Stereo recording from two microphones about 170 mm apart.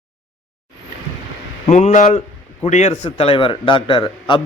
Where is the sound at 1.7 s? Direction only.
40° left (ahead or behind).